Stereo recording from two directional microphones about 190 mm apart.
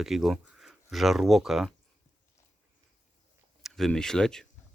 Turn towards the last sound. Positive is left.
turn(degrees=5)  # may be behind; listen again after turning